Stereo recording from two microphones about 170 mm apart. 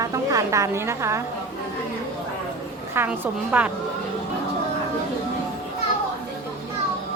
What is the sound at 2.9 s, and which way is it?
Speech, 10° right (ahead or behind).